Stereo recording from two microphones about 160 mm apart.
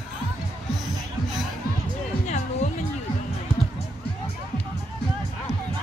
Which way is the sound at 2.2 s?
45° left (ahead or behind).